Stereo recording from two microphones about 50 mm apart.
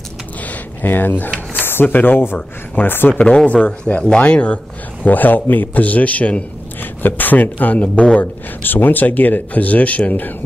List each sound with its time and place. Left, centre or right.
0.5 s a sound: left
1.5 s speech: left
3.2 s speech: left
5.0 s a man's voice: left
8.2 s a man's voice: left